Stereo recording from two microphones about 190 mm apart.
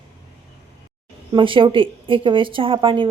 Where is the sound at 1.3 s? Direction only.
25° right (ahead or behind).